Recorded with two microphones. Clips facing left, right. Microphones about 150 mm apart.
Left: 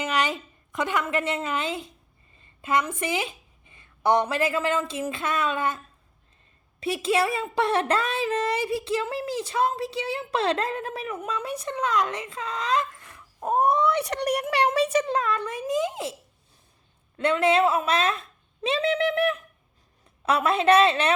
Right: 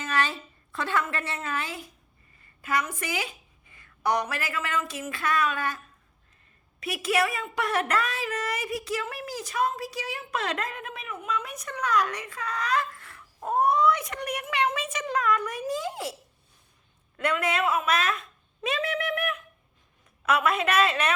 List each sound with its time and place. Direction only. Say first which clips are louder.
0.0 s a woman's voice: left 3 dB; 15° left (ahead or behind)
17.2 s speech: left 6 dB; 25° left (ahead or behind)